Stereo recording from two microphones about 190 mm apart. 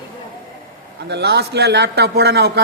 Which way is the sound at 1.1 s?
60° right (ahead or behind).